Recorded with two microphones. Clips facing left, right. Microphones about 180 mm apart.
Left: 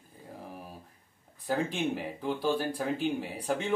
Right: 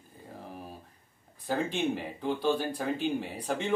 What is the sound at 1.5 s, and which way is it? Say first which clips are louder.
Speech: even; 5° left (ahead or behind).